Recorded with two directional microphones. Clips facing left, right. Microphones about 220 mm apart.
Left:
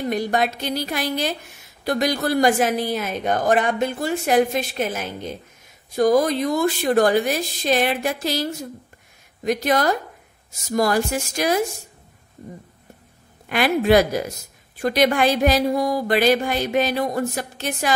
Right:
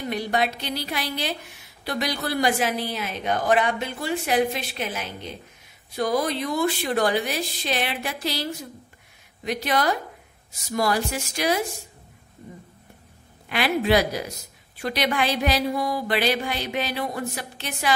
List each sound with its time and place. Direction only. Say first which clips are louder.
0.1 s a woman's voice: left 2 dB; 45° left (ahead or behind)
13.5 s a woman's voice: left 4 dB; 45° left (ahead or behind)